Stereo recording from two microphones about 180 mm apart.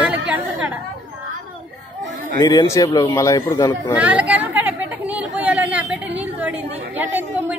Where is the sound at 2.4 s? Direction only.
20° left (ahead or behind).